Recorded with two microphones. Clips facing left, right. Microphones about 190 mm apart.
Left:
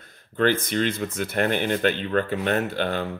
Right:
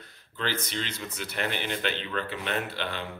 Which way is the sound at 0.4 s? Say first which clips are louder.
Left 11 dB; 55° left (ahead or behind).